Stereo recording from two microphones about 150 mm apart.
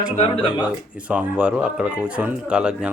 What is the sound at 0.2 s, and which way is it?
Speech, 35° left (ahead or behind).